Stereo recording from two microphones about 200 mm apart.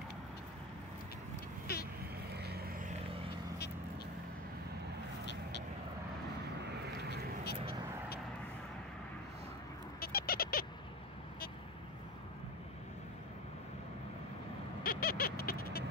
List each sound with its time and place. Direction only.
2.3 s vehicle: 55° right (ahead or behind)
5.2 s vehicle: 60° left (ahead or behind)
7.4 s vehicle: 50° left (ahead or behind)
9.9 s bird: 50° left (ahead or behind)
14.8 s a sound: 45° left (ahead or behind)